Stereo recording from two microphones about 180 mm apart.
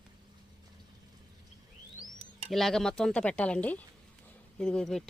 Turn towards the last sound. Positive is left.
turn(degrees=5)  # may be behind; listen again after turning